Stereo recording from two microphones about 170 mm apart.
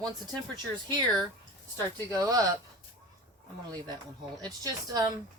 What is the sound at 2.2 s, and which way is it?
Speech, 20° right (ahead or behind).